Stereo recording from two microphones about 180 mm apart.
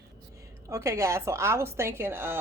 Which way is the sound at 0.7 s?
15° right (ahead or behind).